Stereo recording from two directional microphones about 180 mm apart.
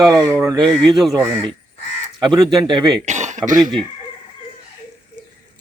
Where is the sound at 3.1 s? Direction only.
40° right (ahead or behind).